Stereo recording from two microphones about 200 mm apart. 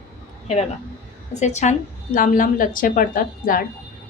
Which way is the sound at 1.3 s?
35° left (ahead or behind).